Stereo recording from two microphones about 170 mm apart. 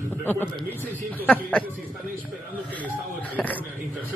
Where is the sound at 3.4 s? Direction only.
5° left (ahead or behind).